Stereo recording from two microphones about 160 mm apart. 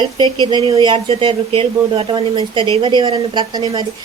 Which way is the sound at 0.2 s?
25° right (ahead or behind).